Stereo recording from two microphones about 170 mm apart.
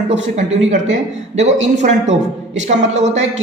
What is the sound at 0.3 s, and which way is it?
A man's voice, 45° right (ahead or behind).